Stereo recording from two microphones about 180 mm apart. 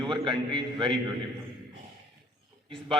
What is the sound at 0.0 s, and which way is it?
Speech, 25° right (ahead or behind).